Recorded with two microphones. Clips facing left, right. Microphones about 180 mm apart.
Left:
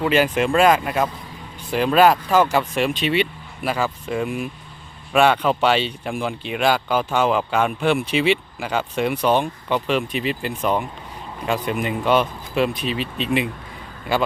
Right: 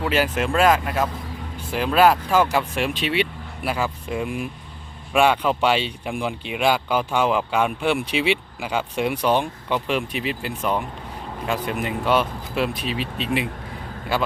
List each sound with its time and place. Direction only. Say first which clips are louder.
0.1 s speech: left 3 dB; 5° right (ahead or behind)
9.3 s speech: left 2 dB; 15° left (ahead or behind)
9.8 s speech: left 3 dB; 10° right (ahead or behind)
10.6 s speech: left 2 dB; 10° left (ahead or behind)
11.4 s speech: left 3 dB; 5° right (ahead or behind)